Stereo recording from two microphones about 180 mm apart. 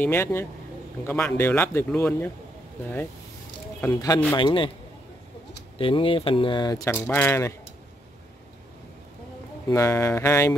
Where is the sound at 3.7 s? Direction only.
15° left (ahead or behind).